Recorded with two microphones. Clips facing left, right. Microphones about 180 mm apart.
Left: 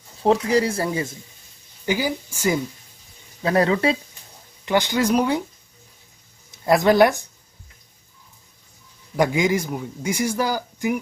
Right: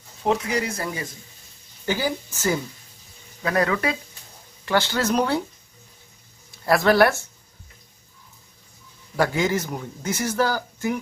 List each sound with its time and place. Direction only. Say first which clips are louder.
0.2 s speech: left 5 dB; 30° left (ahead or behind)
1.9 s a man's voice: left 2 dB; 10° left (ahead or behind)
3.4 s speech: left 4 dB; 30° left (ahead or behind)
4.6 s a man's voice: left 2 dB; 15° left (ahead or behind)
6.5 s speech: left 2 dB; 20° left (ahead or behind)
9.1 s a man's voice: left 2 dB; 15° left (ahead or behind)